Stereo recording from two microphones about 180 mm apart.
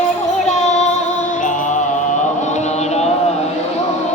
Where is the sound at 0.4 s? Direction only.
40° left (ahead or behind).